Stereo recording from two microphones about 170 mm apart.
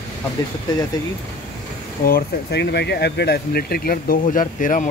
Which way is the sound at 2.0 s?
70° left (ahead or behind).